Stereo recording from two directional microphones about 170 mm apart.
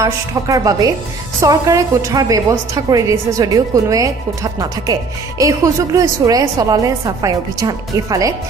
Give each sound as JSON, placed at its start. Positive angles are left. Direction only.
{"t": 0.0, "sound": "a woman's voice", "side_deg": -20}
{"t": 5.4, "sound": "a woman's voice", "side_deg": -20}